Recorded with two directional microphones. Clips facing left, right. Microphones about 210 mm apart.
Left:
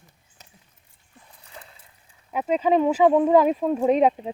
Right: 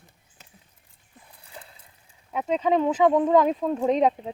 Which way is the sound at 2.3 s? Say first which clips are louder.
Left 2 dB; 5° left (ahead or behind).